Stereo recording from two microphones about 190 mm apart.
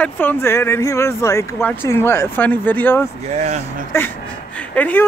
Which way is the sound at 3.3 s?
35° right (ahead or behind).